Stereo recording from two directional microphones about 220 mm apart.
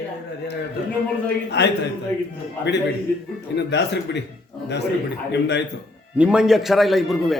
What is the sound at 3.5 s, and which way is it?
Speech, 50° left (ahead or behind).